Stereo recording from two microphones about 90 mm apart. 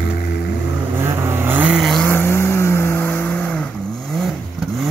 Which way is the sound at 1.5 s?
15° right (ahead or behind).